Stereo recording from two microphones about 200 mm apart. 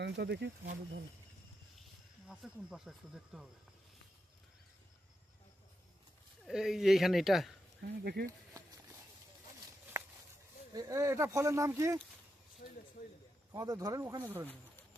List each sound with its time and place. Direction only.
0.0 s speech: 55° right (ahead or behind)
2.2 s speech: 5° right (ahead or behind)
6.4 s speech: centre (ahead or behind)
7.9 s speech: 50° right (ahead or behind)
10.0 s a sound: 15° right (ahead or behind)
10.8 s speech: 15° right (ahead or behind)
12.6 s speech: 40° left (ahead or behind)
13.5 s speech: 20° right (ahead or behind)